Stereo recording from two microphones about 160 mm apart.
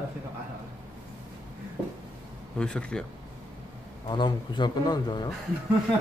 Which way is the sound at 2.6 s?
5° left (ahead or behind).